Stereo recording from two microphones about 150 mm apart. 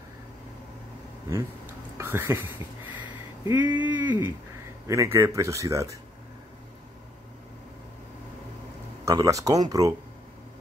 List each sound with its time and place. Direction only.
2.0 s a man's voice: 15° right (ahead or behind)
9.0 s a man's voice: 20° right (ahead or behind)